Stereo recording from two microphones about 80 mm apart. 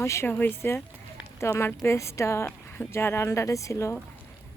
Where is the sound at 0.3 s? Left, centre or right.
Left.